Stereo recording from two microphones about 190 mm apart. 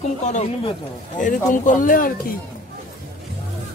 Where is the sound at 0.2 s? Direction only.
35° left (ahead or behind).